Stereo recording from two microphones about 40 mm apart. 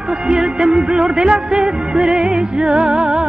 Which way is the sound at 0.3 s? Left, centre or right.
Right.